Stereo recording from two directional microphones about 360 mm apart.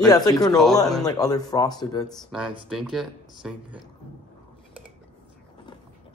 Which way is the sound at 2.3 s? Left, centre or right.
Centre.